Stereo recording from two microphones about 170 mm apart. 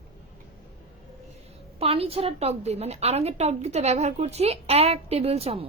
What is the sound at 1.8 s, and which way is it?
A woman's voice, 35° right (ahead or behind).